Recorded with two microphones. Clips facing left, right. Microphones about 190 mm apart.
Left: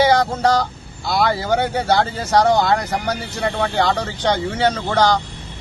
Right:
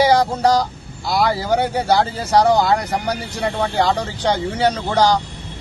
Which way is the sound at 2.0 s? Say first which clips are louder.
Right 1 dB; 35° right (ahead or behind).